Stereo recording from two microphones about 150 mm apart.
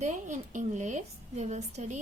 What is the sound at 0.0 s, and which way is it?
A woman's voice, 55° right (ahead or behind).